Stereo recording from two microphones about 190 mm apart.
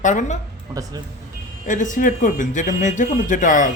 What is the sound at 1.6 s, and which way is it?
A man's voice, 40° left (ahead or behind).